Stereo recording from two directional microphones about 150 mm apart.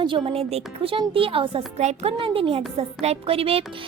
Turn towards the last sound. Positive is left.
turn(degrees=-40)  # may be behind; listen again after turning